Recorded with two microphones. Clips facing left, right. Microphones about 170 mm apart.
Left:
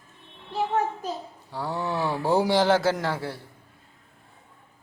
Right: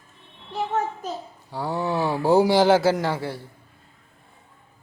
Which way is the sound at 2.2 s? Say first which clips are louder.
Right 4 dB; 5° right (ahead or behind).